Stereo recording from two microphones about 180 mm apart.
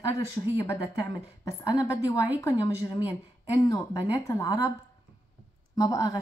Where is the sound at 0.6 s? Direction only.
20° left (ahead or behind).